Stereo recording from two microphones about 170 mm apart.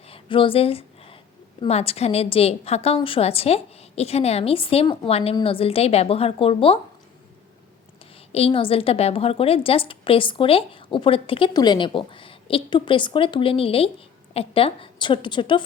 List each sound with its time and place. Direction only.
0.1 s a sound: 30° left (ahead or behind)
1.6 s a woman's voice: 35° left (ahead or behind)
8.3 s a woman's voice: 35° left (ahead or behind)